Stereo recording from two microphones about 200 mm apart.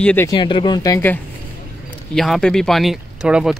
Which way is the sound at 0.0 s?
10° left (ahead or behind).